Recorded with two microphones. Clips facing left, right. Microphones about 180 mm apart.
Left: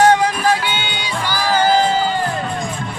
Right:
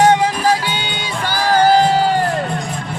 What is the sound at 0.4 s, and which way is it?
Music, 35° right (ahead or behind).